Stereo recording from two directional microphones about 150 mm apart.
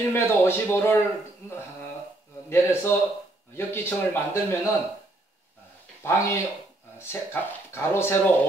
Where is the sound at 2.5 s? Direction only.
15° left (ahead or behind).